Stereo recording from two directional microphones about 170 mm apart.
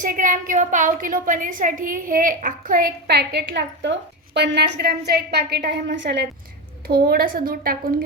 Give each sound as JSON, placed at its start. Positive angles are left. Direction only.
{"t": 0.0, "sound": "a woman's voice", "side_deg": -50}
{"t": 4.4, "sound": "a woman's voice", "side_deg": -80}
{"t": 6.8, "sound": "a woman's voice", "side_deg": -65}